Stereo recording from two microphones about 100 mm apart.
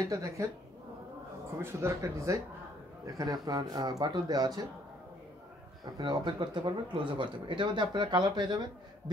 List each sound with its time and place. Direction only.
0.1 s speech: 35° right (ahead or behind)
1.6 s speech: 25° right (ahead or behind)
5.9 s speech: 50° right (ahead or behind)